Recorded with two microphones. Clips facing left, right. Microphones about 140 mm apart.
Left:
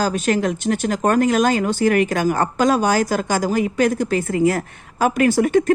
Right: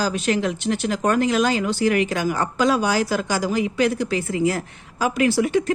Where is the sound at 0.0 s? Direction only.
45° left (ahead or behind).